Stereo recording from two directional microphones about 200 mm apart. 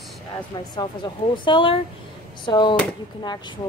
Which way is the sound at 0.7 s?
25° left (ahead or behind).